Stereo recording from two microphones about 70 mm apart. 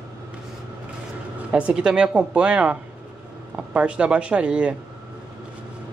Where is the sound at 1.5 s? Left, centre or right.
Centre.